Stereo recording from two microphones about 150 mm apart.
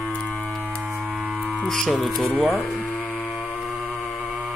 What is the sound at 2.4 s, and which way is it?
Speech, 10° right (ahead or behind).